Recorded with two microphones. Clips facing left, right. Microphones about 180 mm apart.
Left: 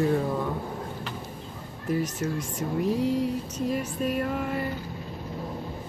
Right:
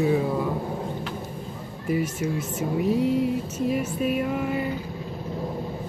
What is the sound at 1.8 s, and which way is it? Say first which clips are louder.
Speech: right 2 dB; 10° right (ahead or behind).